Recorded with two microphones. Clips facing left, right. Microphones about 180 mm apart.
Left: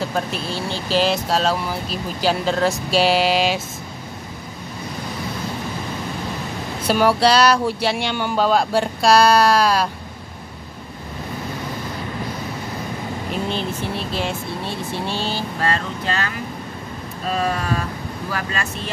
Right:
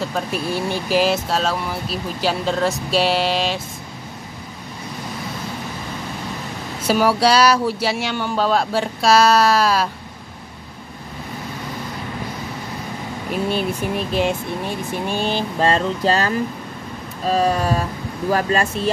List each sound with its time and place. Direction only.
0.0 s speech: centre (ahead or behind)
0.5 s speech: 15° right (ahead or behind); by 3.6 s 5° left (ahead or behind)
6.8 s speech: 5° right (ahead or behind)
13.3 s speech: 10° right (ahead or behind); by 18.9 s 35° right (ahead or behind)